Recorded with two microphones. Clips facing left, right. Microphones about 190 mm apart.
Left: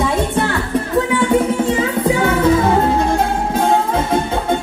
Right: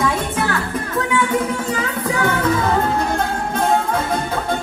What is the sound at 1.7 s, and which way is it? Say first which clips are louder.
Music: left 6 dB; 30° left (ahead or behind).